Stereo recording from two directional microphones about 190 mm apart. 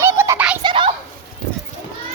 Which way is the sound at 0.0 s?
15° right (ahead or behind).